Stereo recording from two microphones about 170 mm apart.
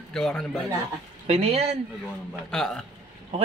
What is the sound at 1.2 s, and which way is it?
Speech, 35° right (ahead or behind).